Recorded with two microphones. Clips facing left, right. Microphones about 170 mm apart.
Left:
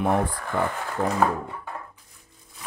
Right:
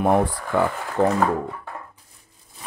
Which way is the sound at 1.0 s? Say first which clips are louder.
Right 7 dB; 70° right (ahead or behind).